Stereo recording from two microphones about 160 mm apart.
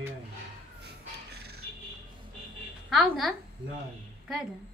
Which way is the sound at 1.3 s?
90° right.